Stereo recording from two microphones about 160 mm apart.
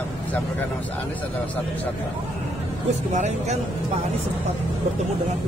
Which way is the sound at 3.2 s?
45° right (ahead or behind).